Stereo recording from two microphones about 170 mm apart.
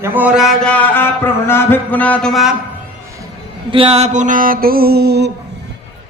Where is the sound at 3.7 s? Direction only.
35° right (ahead or behind); by 5.3 s 70° right (ahead or behind).